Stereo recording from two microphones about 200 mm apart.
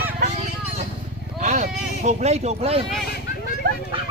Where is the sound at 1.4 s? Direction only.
40° right (ahead or behind).